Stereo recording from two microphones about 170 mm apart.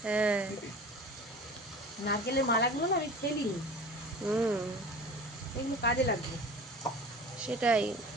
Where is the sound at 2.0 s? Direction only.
75° left (ahead or behind).